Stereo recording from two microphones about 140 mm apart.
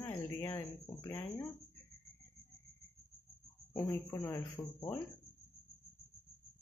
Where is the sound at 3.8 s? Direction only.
20° left (ahead or behind).